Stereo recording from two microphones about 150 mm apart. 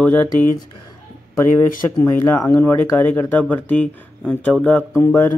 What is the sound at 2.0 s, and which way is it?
Speech, 15° left (ahead or behind).